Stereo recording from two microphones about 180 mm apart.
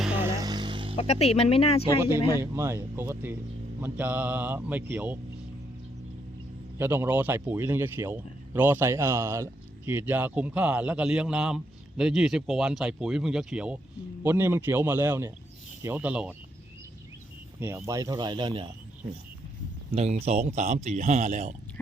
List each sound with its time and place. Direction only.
0.0 s music: 15° right (ahead or behind)
0.9 s speech: 35° left (ahead or behind)
2.4 s speech: 15° right (ahead or behind)
6.7 s speech: 10° right (ahead or behind)
17.6 s speech: 15° right (ahead or behind)
19.9 s speech: 35° right (ahead or behind)